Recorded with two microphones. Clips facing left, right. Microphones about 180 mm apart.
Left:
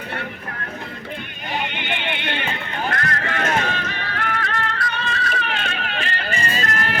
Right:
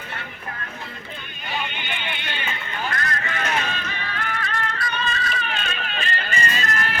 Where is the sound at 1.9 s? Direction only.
65° left (ahead or behind).